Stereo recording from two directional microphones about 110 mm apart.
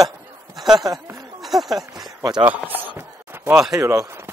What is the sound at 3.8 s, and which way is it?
Speech, 25° right (ahead or behind).